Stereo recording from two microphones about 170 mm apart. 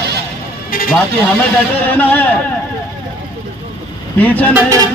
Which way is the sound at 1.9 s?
10° left (ahead or behind).